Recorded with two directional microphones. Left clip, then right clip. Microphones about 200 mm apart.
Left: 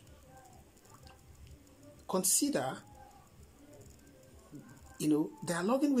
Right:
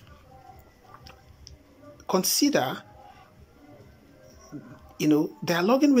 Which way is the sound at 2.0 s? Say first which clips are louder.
Right 9 dB; 30° right (ahead or behind).